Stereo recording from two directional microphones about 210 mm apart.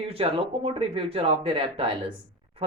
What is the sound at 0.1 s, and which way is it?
Speech, 25° right (ahead or behind).